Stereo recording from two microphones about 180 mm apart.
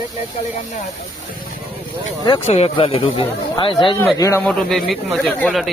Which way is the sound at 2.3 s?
35° left (ahead or behind).